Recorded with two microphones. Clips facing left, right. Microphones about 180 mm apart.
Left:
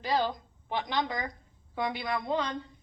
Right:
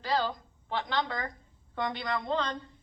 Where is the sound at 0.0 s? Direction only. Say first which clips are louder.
Left 1 dB; 15° left (ahead or behind).